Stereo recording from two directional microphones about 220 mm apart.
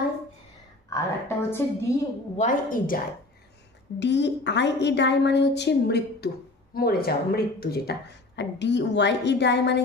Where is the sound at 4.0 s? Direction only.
55° left (ahead or behind).